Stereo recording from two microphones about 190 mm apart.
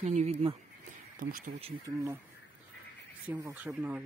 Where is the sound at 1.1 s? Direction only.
45° right (ahead or behind).